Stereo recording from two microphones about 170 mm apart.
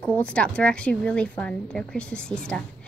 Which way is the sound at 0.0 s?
5° left (ahead or behind).